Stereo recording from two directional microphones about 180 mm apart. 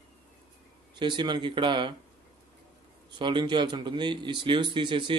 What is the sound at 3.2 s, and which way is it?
A man's voice, 25° right (ahead or behind).